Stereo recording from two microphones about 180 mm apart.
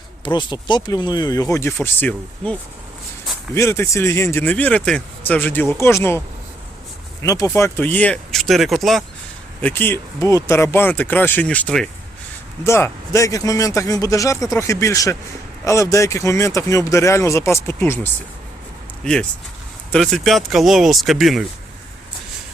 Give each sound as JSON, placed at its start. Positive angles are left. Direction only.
{"t": 0.3, "sound": "speech", "side_deg": 25}
{"t": 9.6, "sound": "speech", "side_deg": 10}